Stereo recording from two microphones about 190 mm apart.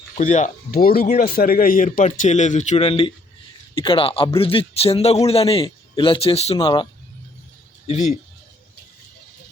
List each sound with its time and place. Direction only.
0.2 s a man's voice: 40° left (ahead or behind)